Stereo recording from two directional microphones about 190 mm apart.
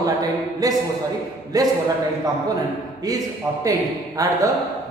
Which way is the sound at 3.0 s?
20° right (ahead or behind).